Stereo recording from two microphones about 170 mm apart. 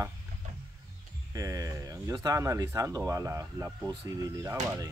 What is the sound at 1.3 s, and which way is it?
Speech, 20° right (ahead or behind).